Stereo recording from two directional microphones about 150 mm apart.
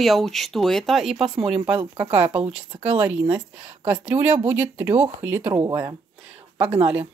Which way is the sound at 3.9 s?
15° right (ahead or behind).